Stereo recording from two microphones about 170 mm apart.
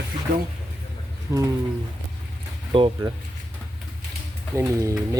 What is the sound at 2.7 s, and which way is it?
Speech, 30° right (ahead or behind).